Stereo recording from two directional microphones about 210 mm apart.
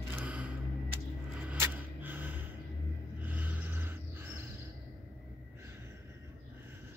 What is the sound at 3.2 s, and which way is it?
Music, 10° right (ahead or behind).